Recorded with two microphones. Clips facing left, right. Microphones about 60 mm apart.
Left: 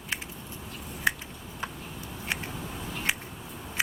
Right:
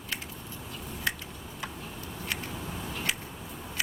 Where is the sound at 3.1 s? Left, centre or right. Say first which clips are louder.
Left 4 dB; left.